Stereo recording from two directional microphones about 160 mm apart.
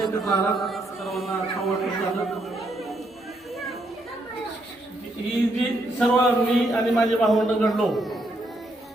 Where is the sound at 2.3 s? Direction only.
Centre (ahead or behind).